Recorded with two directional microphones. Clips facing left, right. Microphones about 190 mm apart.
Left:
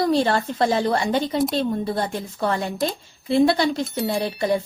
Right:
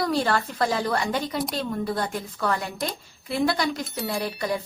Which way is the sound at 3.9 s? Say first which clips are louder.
Left 5 dB; centre (ahead or behind).